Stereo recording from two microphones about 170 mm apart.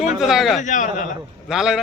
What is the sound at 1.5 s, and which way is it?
Speech, 5° right (ahead or behind).